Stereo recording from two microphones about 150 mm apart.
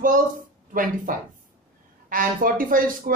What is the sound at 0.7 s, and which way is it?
Speech, 65° right (ahead or behind).